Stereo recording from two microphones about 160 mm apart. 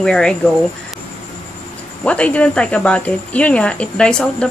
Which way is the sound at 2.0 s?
10° left (ahead or behind).